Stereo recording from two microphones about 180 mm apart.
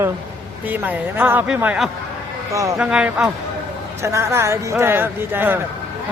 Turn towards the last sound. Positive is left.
turn(degrees=-10)  # may be behind; listen again after turning